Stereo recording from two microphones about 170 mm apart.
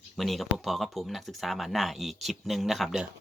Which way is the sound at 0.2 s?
Centre (ahead or behind).